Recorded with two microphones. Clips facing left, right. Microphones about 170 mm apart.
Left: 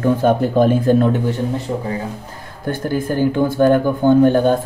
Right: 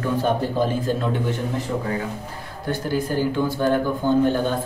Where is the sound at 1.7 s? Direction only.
25° left (ahead or behind).